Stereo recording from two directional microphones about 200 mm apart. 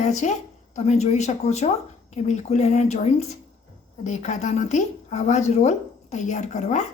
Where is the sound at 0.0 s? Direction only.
35° left (ahead or behind).